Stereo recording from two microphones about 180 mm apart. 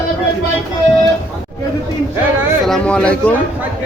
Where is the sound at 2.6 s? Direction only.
5° left (ahead or behind).